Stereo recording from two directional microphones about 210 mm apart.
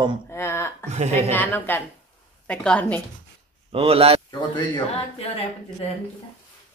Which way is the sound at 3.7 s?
30° right (ahead or behind).